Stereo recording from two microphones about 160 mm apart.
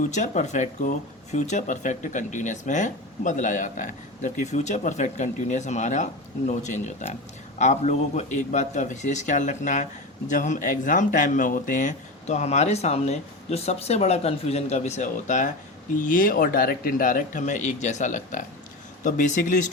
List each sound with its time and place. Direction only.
0.1 s speech: 50° left (ahead or behind)